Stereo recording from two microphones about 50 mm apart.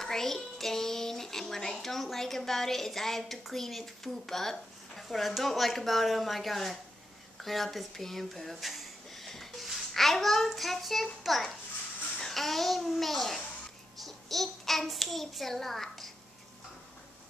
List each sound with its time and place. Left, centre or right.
0.0 s speech: centre
7.4 s a sound: centre
9.9 s a child's voice: centre